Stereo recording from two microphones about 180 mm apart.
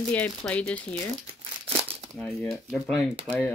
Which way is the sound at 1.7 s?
35° right (ahead or behind).